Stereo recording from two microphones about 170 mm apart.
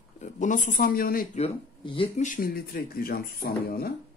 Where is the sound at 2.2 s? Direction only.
55° left (ahead or behind).